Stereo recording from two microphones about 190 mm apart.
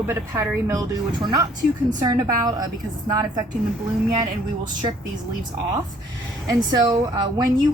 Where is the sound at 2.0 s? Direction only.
20° right (ahead or behind).